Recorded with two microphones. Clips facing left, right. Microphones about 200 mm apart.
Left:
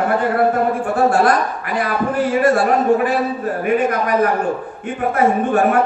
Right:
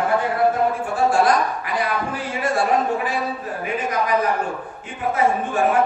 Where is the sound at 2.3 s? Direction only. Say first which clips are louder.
Left 4 dB; 60° left (ahead or behind).